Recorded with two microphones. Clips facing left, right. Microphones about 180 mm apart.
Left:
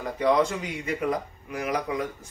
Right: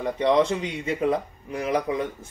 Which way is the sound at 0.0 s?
25° right (ahead or behind).